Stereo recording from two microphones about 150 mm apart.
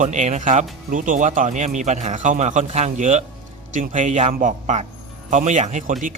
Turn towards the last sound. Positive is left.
turn(degrees=-60)  # may be behind; listen again after turning